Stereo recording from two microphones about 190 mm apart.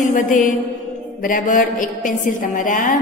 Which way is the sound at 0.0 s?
40° left (ahead or behind).